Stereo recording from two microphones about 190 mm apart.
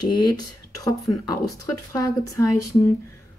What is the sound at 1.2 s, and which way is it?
Speech, 20° left (ahead or behind).